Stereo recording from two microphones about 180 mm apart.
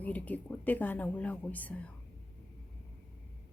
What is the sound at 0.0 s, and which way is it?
Speech, 10° left (ahead or behind).